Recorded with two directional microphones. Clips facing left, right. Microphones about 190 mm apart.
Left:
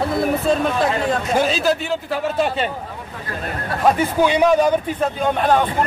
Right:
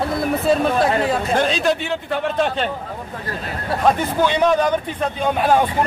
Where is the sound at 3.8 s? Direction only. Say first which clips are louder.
Left 2 dB; 10° left (ahead or behind); by 5.9 s 5° right (ahead or behind).